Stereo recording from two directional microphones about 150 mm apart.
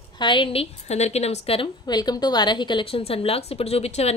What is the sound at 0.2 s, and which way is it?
A woman's voice, 35° left (ahead or behind).